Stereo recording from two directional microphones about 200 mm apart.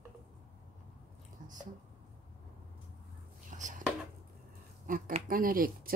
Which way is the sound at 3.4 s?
40° right (ahead or behind).